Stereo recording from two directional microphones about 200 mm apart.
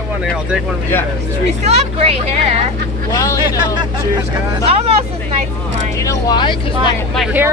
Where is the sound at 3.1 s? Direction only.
20° left (ahead or behind).